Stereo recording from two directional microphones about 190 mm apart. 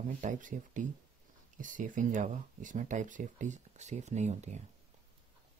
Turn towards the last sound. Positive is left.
turn(degrees=-35)  # may be behind; listen again after turning